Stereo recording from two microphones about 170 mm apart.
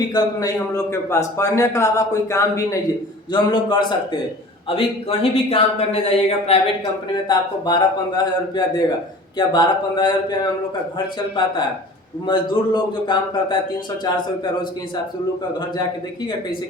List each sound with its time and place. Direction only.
0.1 s a man's voice: 25° left (ahead or behind)
3.3 s a man's voice: 30° left (ahead or behind)
7.3 s a man's voice: 25° left (ahead or behind)